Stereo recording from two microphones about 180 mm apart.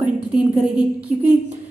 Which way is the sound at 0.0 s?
5° right (ahead or behind).